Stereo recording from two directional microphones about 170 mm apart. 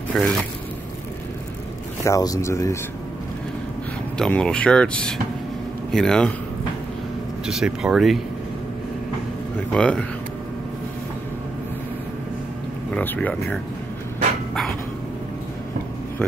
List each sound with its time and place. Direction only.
0.1 s speech: 5° left (ahead or behind)
2.0 s speech: 20° left (ahead or behind)
4.2 s speech: 5° left (ahead or behind)
7.4 s speech: 5° right (ahead or behind)
9.8 s speech: 5° left (ahead or behind)
12.9 s speech: 10° left (ahead or behind)